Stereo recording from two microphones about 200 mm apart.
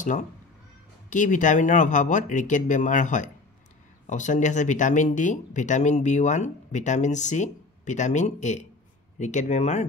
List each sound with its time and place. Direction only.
0.0 s speech: 40° left (ahead or behind)